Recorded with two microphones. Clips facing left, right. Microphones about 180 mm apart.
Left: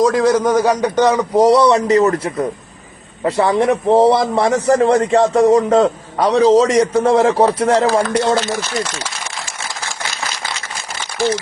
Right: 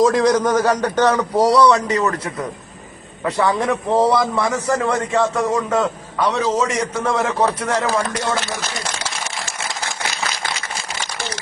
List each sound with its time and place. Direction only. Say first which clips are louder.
0.0 s a man's voice: left 2 dB; centre (ahead or behind)
1.5 s a man's voice: left 2 dB; 25° left (ahead or behind)